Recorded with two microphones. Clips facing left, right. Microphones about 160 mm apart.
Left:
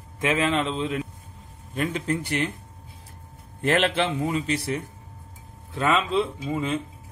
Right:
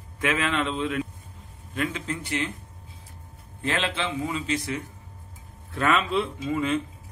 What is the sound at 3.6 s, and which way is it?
Speech, 50° left (ahead or behind).